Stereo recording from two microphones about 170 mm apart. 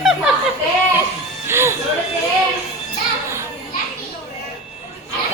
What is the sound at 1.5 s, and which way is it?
Speech, 15° right (ahead or behind).